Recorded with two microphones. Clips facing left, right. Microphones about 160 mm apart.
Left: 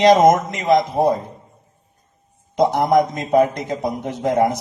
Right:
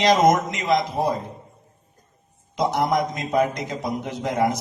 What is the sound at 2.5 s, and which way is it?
A man's voice, 45° left (ahead or behind).